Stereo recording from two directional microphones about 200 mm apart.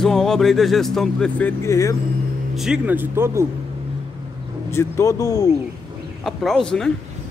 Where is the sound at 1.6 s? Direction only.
15° left (ahead or behind).